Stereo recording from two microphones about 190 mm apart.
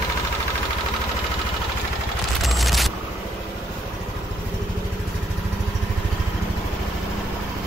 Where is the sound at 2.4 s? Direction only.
Centre (ahead or behind).